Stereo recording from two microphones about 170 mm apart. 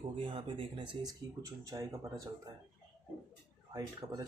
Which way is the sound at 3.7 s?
25° right (ahead or behind).